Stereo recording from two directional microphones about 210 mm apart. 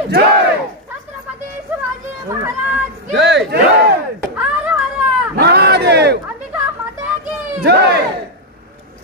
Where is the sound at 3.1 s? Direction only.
55° right (ahead or behind).